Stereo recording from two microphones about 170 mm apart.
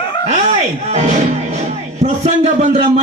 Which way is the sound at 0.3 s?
40° right (ahead or behind).